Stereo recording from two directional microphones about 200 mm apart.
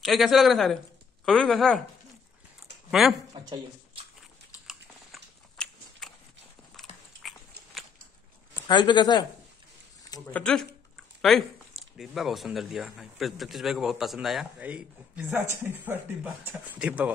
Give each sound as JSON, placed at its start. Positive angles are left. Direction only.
{"t": 0.0, "sound": "speech", "side_deg": 0}
{"t": 2.9, "sound": "speech", "side_deg": 0}
{"t": 3.3, "sound": "speech", "side_deg": -20}
{"t": 4.6, "sound": "biting", "side_deg": 0}
{"t": 6.9, "sound": "dog", "side_deg": 30}
{"t": 8.6, "sound": "speech", "side_deg": 20}
{"t": 10.3, "sound": "speech", "side_deg": 5}